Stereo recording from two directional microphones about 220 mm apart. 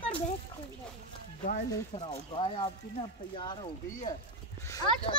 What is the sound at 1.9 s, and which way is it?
A child's voice, 30° left (ahead or behind).